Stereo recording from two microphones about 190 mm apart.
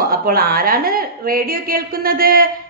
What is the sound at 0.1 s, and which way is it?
A woman's voice, 50° right (ahead or behind).